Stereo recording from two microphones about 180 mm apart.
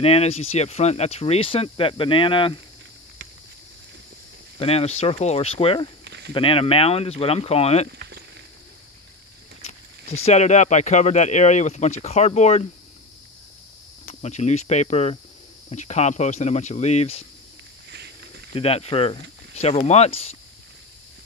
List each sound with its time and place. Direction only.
0.0 s speech: 35° left (ahead or behind)
4.6 s speech: 35° left (ahead or behind)
6.0 s a sound: 70° right (ahead or behind)
6.3 s speech: 30° left (ahead or behind)
9.6 s speech: 35° left (ahead or behind)
14.2 s speech: 40° left (ahead or behind)
18.5 s speech: 35° left (ahead or behind)